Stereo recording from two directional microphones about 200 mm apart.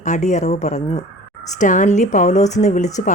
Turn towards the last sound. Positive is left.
turn(degrees=35)  # may be behind; listen again after turning